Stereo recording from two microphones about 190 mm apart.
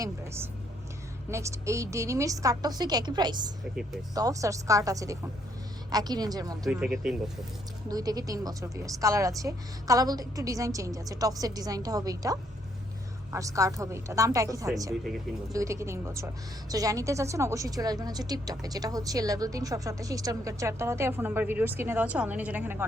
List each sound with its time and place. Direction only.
1.3 s a woman's voice: 15° right (ahead or behind)
6.7 s speech: 5° right (ahead or behind)
7.9 s a woman's voice: 20° right (ahead or behind)